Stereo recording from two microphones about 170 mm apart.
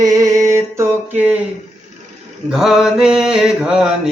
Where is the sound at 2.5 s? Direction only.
5° right (ahead or behind).